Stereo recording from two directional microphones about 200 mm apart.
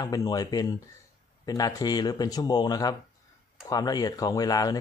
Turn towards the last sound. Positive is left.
turn(degrees=20)  # may be behind; listen again after turning